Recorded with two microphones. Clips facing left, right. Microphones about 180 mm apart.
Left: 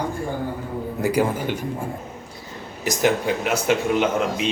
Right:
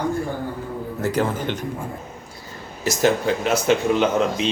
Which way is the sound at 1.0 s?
10° left (ahead or behind).